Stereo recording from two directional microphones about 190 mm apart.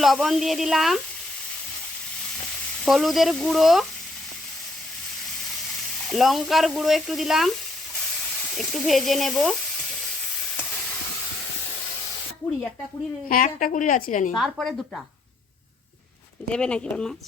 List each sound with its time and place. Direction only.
0.0 s speech: centre (ahead or behind)
2.8 s speech: centre (ahead or behind)
6.1 s speech: centre (ahead or behind)
8.5 s speech: centre (ahead or behind)
13.2 s a woman's voice: 45° left (ahead or behind)
14.3 s speech: centre (ahead or behind)
16.5 s speech: 5° left (ahead or behind)